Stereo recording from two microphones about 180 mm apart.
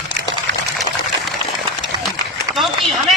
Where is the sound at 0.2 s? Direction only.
65° right (ahead or behind).